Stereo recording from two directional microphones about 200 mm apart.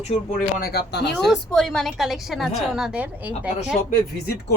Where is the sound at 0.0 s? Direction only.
35° left (ahead or behind); by 1.1 s 55° left (ahead or behind).